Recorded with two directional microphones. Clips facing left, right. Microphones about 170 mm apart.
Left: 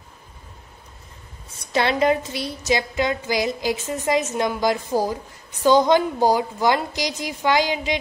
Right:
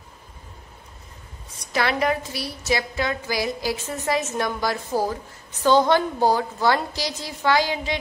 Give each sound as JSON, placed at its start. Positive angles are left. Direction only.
{"t": 1.7, "sound": "a woman's voice", "side_deg": 25}